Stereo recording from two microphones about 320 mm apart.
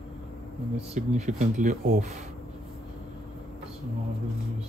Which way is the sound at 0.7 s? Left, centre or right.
Right.